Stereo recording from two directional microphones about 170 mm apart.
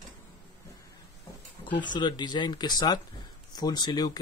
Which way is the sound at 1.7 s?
25° left (ahead or behind).